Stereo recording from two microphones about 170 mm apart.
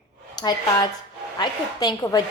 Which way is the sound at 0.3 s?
25° left (ahead or behind).